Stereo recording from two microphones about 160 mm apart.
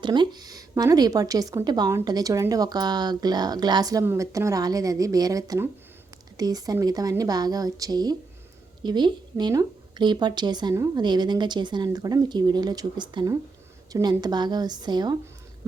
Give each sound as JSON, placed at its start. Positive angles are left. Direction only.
{"t": 0.0, "sound": "a woman's voice", "side_deg": -30}